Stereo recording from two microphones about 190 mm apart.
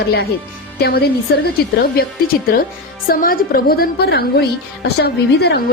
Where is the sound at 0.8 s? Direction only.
55° left (ahead or behind).